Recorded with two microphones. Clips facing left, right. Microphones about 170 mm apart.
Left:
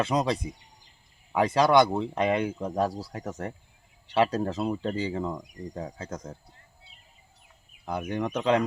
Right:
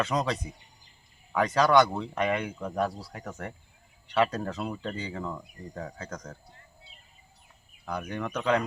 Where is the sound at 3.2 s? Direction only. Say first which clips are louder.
Left 1 dB; 25° left (ahead or behind).